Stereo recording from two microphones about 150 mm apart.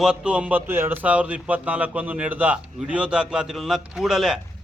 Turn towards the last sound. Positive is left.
turn(degrees=0)  # may be behind; listen again after turning